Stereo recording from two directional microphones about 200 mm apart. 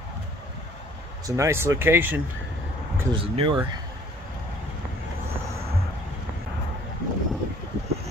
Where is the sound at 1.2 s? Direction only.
15° right (ahead or behind).